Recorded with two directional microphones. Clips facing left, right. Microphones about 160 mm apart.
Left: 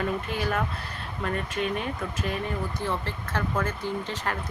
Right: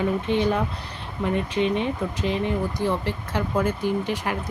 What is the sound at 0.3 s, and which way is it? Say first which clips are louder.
Speech: right 7 dB; 20° right (ahead or behind).